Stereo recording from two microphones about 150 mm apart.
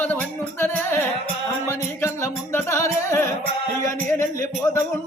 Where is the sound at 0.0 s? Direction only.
10° left (ahead or behind).